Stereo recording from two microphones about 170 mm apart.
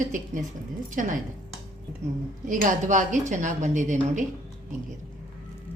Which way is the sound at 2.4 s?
50° right (ahead or behind).